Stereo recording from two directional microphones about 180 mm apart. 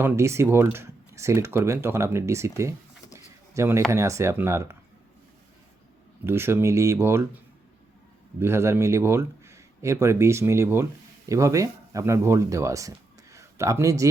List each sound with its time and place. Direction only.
0.0 s speech: 15° right (ahead or behind)
6.2 s speech: 15° right (ahead or behind)
8.4 s speech: 15° right (ahead or behind)